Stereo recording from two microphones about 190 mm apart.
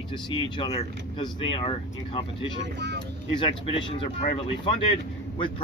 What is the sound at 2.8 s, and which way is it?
Vehicle, 65° right (ahead or behind).